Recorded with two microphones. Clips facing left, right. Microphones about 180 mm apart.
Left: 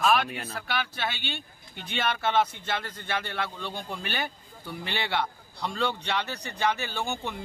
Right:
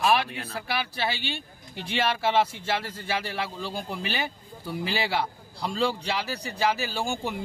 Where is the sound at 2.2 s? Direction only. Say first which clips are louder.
Even; 5° right (ahead or behind).